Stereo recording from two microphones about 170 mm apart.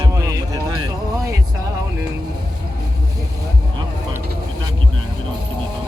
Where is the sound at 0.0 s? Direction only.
20° right (ahead or behind).